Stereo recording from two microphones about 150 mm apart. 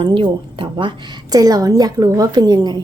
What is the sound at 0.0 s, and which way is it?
A woman's voice, 35° right (ahead or behind).